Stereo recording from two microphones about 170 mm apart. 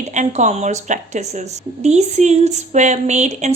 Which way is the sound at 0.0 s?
45° right (ahead or behind).